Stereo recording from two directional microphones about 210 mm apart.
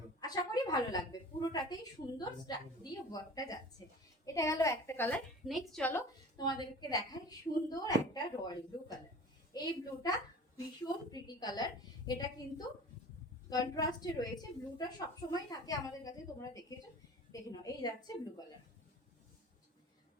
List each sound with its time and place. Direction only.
0.2 s a sound: 20° left (ahead or behind)
3.1 s a woman's voice: 20° left (ahead or behind)
6.3 s a woman's voice: 20° left (ahead or behind)